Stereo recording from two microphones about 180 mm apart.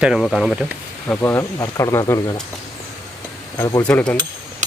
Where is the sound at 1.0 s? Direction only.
10° left (ahead or behind).